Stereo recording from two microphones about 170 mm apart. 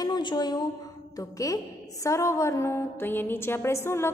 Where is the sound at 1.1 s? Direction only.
20° left (ahead or behind).